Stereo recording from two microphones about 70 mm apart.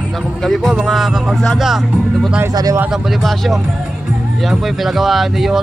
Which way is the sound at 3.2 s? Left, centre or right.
Centre.